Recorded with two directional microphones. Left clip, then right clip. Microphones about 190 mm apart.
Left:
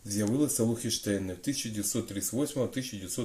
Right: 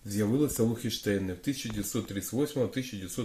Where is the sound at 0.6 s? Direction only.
40° right (ahead or behind).